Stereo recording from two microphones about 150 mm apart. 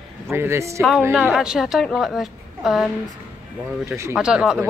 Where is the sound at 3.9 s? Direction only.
15° right (ahead or behind).